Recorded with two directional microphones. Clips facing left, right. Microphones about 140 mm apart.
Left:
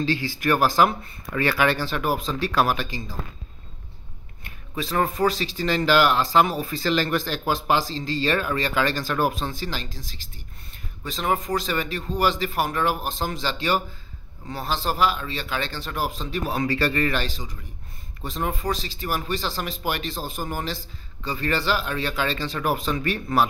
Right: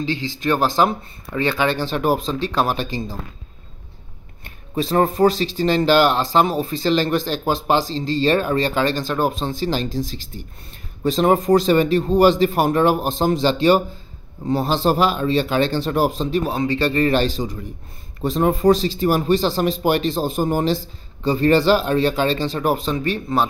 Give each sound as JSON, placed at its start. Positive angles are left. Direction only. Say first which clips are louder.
{"t": 0.0, "sound": "speech", "louder": "right 1 dB", "side_deg": -20}
{"t": 4.7, "sound": "speech", "louder": "right 6 dB", "side_deg": -30}